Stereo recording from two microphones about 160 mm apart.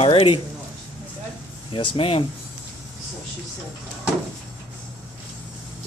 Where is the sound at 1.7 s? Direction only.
35° left (ahead or behind).